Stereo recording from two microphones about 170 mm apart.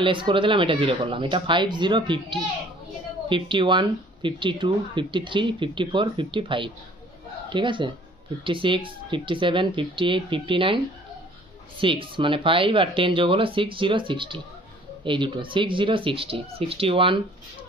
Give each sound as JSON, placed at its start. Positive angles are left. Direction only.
{"t": 0.0, "sound": "speech", "side_deg": -30}
{"t": 11.8, "sound": "speech", "side_deg": -30}